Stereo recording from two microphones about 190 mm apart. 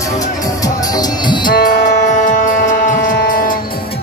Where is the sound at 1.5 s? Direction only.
45° left (ahead or behind).